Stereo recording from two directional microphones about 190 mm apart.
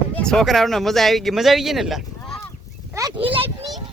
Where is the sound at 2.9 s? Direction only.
20° right (ahead or behind).